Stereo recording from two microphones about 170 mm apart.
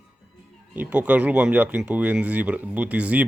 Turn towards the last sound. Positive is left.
turn(degrees=-10)  # may be behind; listen again after turning